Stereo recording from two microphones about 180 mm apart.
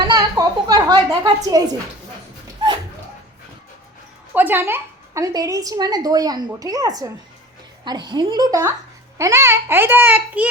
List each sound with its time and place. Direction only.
0.1 s a woman's voice: 20° right (ahead or behind)
4.4 s a woman's voice: 10° right (ahead or behind)